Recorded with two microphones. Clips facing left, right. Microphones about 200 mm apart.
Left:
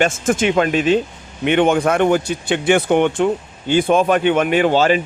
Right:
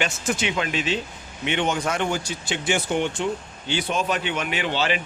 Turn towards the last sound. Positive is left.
turn(degrees=45)  # may be behind; listen again after turning